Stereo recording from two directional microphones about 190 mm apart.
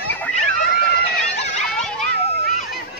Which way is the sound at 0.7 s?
60° left (ahead or behind).